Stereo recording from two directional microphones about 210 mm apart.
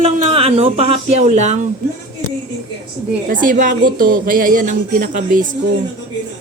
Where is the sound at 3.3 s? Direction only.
40° right (ahead or behind).